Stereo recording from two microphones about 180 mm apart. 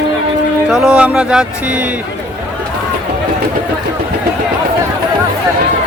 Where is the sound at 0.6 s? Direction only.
5° right (ahead or behind).